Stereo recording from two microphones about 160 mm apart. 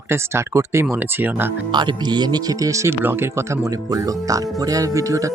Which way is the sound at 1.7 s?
25° right (ahead or behind).